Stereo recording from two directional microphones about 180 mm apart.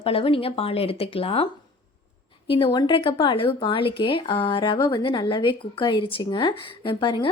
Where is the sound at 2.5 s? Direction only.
30° left (ahead or behind).